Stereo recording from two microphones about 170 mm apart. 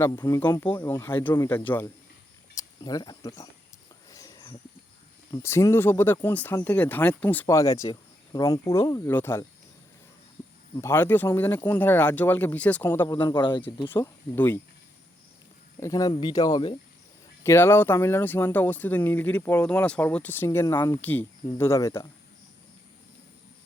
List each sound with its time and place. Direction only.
0.0 s speech: 15° left (ahead or behind)
4.1 s a sound: 20° left (ahead or behind)
5.3 s speech: 15° left (ahead or behind)
10.8 s speech: 15° left (ahead or behind)
13.2 s speech: 25° left (ahead or behind)
13.8 s speech: 15° left (ahead or behind)
15.8 s speech: 20° left (ahead or behind)